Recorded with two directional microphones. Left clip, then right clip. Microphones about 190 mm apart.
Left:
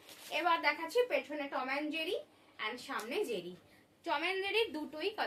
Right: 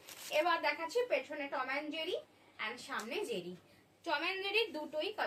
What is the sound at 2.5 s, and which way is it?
A woman's voice, 15° left (ahead or behind).